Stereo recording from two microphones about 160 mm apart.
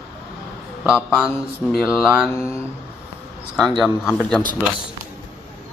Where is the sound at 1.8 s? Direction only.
5° right (ahead or behind).